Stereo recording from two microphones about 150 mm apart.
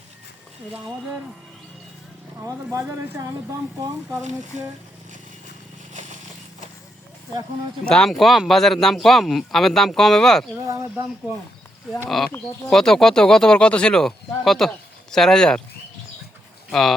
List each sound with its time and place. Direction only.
2.4 s speech: 20° right (ahead or behind)
5.9 s a sound: 55° right (ahead or behind)
7.9 s speech: 5° left (ahead or behind)
12.0 s speech: centre (ahead or behind)